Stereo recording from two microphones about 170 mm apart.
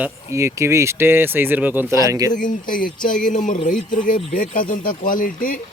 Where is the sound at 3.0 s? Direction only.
50° left (ahead or behind).